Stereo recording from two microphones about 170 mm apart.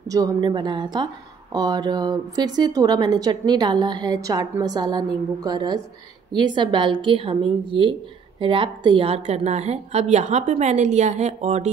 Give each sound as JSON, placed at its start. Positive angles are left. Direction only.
{"t": 0.1, "sound": "a woman's voice", "side_deg": -25}